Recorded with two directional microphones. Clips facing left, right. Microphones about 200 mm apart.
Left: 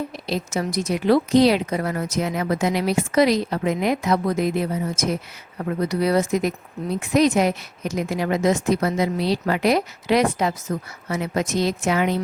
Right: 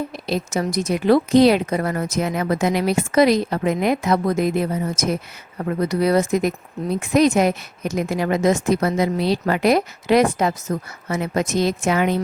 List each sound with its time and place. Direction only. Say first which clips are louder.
0.3 s speech: right 3 dB; 50° right (ahead or behind)